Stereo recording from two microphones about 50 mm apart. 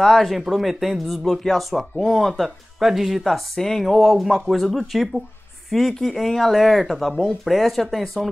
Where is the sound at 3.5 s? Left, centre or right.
Centre.